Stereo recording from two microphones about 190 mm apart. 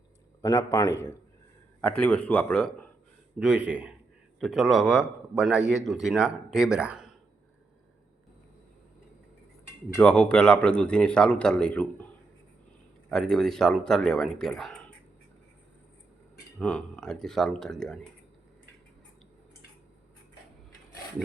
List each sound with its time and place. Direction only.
0.4 s a man's voice: 20° left (ahead or behind)
1.8 s speech: 5° left (ahead or behind)
3.3 s a man's voice: 5° right (ahead or behind)
9.9 s a man's voice: 5° left (ahead or behind)
13.1 s a man's voice: centre (ahead or behind)
16.6 s a man's voice: 5° left (ahead or behind)